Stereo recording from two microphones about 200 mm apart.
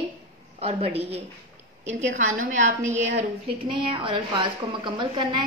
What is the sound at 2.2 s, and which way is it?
Speech, 40° right (ahead or behind).